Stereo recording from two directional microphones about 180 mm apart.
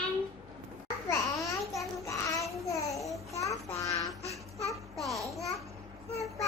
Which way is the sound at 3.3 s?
15° left (ahead or behind).